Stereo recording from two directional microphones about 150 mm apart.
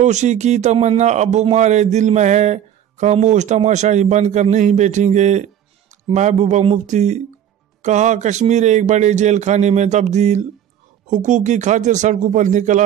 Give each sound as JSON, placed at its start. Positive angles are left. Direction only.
{"t": 0.0, "sound": "a man's voice", "side_deg": -50}